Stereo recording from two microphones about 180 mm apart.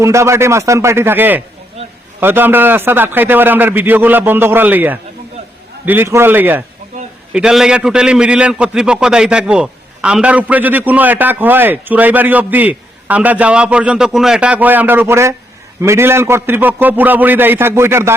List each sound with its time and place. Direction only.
0.0 s a man's voice: 15° right (ahead or behind)